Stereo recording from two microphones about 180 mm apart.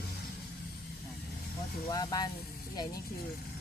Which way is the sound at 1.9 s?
20° left (ahead or behind).